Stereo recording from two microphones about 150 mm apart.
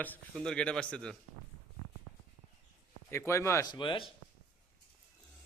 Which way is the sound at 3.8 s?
35° left (ahead or behind).